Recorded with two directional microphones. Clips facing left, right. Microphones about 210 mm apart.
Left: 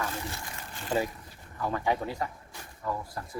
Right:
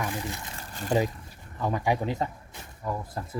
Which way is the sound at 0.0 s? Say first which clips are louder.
Right 3 dB; 15° right (ahead or behind).